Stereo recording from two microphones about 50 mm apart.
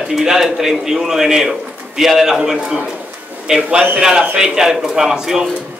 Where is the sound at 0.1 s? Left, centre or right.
Centre.